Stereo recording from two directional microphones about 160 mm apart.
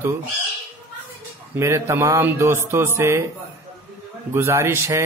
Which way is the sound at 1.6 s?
20° right (ahead or behind).